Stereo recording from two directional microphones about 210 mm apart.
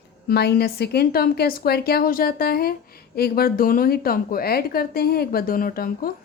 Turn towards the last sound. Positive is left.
turn(degrees=45)  # may be behind; listen again after turning